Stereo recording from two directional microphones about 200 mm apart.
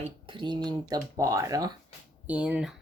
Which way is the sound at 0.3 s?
25° right (ahead or behind).